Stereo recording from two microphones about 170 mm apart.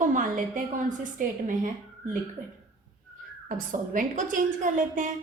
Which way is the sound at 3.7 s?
50° right (ahead or behind).